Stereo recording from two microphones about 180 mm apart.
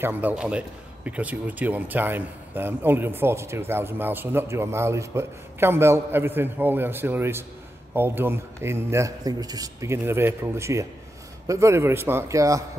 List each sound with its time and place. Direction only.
0.0 s a man's voice: 10° right (ahead or behind)